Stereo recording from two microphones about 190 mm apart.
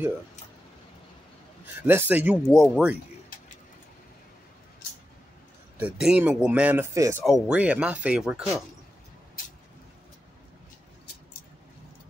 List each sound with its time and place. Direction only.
1.8 s speech: 10° right (ahead or behind)
5.8 s speech: 5° right (ahead or behind)
7.2 s speech: centre (ahead or behind)